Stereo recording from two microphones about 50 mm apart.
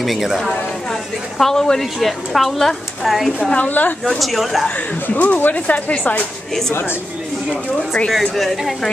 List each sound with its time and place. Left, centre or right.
0.0 s a woman's voice: centre
1.4 s a woman's voice: centre
3.5 s speech: left
4.0 s a woman's voice: centre
5.0 s speech: left
6.7 s speech: left
8.1 s a woman's voice: centre